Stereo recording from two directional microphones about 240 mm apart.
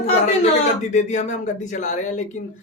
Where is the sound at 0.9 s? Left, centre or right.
Left.